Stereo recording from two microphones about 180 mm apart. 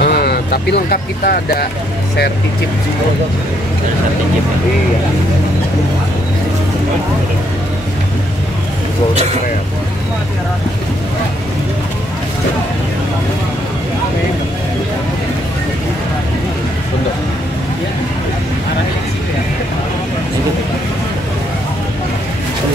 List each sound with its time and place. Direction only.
0.0 s speech: 65° left (ahead or behind)